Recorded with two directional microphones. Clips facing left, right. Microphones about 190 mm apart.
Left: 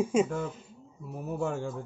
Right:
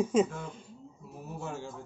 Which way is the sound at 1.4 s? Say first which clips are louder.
Left 7 dB; 55° left (ahead or behind).